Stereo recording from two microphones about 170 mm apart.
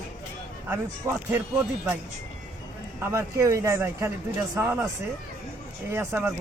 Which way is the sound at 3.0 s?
15° right (ahead or behind).